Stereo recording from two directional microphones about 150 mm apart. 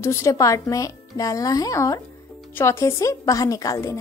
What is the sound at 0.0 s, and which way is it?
A child's voice, 20° left (ahead or behind).